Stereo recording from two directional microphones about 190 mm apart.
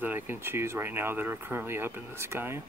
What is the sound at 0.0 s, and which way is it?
Speech, 10° right (ahead or behind).